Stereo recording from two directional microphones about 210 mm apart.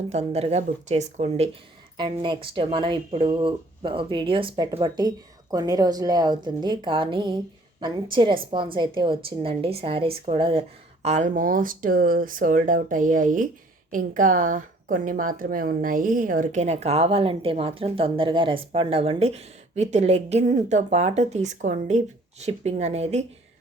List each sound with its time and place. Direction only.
0.1 s a woman's voice: 30° right (ahead or behind)